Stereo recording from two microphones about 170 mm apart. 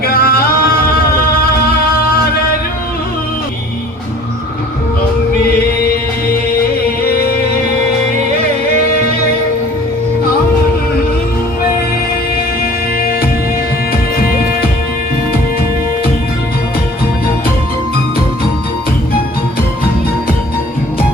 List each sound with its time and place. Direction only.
0.0 s music: 60° left (ahead or behind)
5.5 s music: 60° left (ahead or behind)